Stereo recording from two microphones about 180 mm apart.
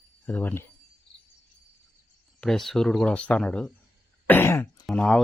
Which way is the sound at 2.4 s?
Centre (ahead or behind).